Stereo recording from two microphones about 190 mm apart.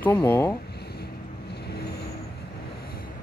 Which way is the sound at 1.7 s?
60° left (ahead or behind).